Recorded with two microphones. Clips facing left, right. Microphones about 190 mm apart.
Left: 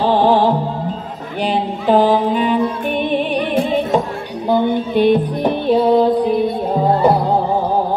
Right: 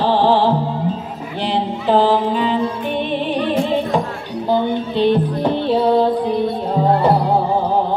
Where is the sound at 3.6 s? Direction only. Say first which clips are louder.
Left 2 dB; 15° left (ahead or behind).